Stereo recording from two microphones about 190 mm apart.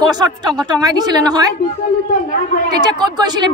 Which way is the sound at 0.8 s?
20° right (ahead or behind).